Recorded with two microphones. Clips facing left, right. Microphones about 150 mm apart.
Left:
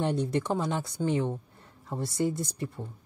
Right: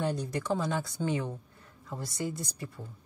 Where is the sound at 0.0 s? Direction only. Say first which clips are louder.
Left 4 dB; 25° left (ahead or behind).